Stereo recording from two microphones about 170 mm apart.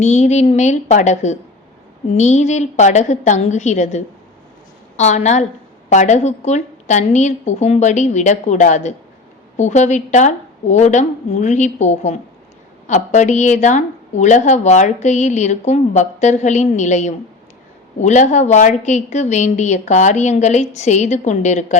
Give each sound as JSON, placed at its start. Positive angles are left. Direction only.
{"t": 0.0, "sound": "a woman's voice", "side_deg": 40}